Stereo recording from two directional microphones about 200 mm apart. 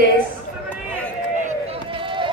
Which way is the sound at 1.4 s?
30° right (ahead or behind).